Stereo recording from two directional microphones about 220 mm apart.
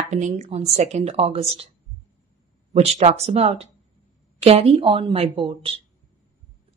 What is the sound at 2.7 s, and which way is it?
Speech, 30° right (ahead or behind).